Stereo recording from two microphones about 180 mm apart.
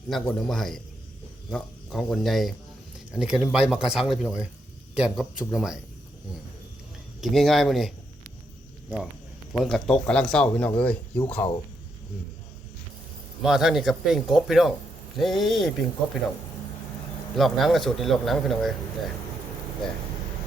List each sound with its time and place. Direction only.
0.1 s speech: centre (ahead or behind)
7.2 s speech: centre (ahead or behind)
9.5 s speech: 5° left (ahead or behind)
13.4 s speech: centre (ahead or behind)
17.3 s speech: centre (ahead or behind)